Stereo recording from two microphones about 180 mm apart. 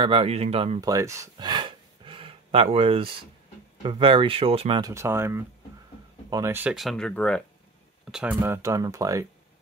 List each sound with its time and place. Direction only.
0.0 s speech: 30° right (ahead or behind)
0.7 s a sound: 20° right (ahead or behind)
3.8 s speech: 30° right (ahead or behind)
4.9 s speech: 15° right (ahead or behind); by 7.4 s 5° left (ahead or behind)
8.1 s speech: 5° right (ahead or behind)